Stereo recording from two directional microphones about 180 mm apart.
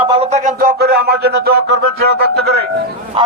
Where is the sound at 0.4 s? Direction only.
55° right (ahead or behind).